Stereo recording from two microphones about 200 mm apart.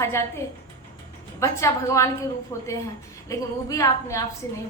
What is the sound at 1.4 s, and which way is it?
A woman's voice, 15° left (ahead or behind).